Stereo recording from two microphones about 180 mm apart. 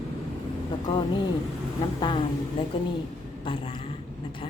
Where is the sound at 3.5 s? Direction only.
30° left (ahead or behind).